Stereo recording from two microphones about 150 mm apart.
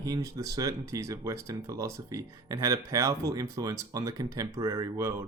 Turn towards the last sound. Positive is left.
turn(degrees=-20)  # may be behind; listen again after turning